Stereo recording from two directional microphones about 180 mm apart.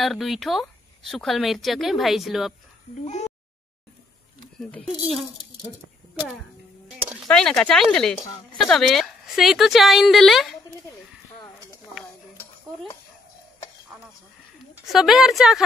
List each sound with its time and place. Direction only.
0.0 s speech: centre (ahead or behind)
3.1 s speech: 40° left (ahead or behind)
4.6 s speech: 5° left (ahead or behind)
6.9 s speech: centre (ahead or behind)
14.9 s speech: centre (ahead or behind)